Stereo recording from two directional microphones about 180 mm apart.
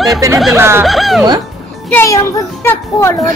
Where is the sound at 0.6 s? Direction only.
15° right (ahead or behind).